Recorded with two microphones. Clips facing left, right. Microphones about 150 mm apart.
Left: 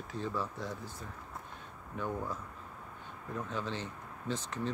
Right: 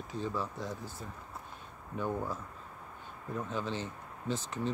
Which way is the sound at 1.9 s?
5° right (ahead or behind).